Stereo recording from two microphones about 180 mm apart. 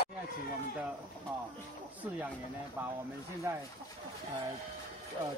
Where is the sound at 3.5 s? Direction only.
20° right (ahead or behind).